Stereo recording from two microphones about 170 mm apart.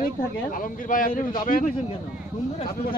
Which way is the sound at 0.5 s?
55° left (ahead or behind).